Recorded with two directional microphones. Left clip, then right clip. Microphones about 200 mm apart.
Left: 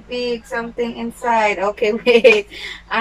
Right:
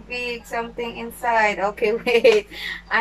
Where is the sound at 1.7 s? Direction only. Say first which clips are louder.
Left 7 dB; 5° left (ahead or behind).